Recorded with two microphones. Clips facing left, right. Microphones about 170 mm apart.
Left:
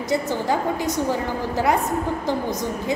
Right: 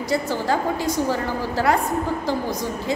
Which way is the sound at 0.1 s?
20° left (ahead or behind).